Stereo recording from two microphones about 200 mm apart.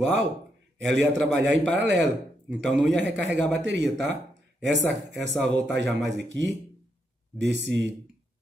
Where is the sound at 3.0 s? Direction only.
60° right (ahead or behind).